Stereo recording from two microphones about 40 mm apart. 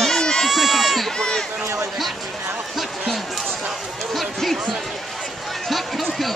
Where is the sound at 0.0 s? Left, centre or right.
Centre.